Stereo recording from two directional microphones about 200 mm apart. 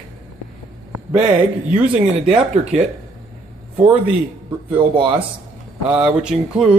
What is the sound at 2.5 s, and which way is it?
Speech, 35° right (ahead or behind).